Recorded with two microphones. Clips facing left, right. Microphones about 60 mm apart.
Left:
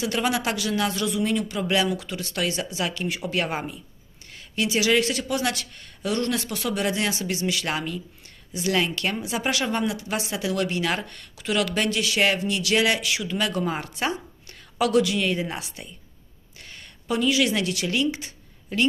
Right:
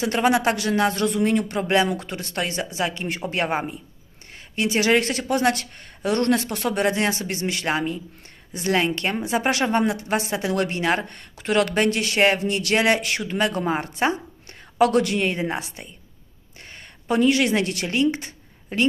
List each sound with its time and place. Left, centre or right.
0.0 s a woman's voice: right